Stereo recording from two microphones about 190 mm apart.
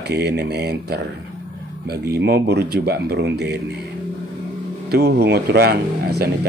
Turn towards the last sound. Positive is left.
turn(degrees=-55)  # may be behind; listen again after turning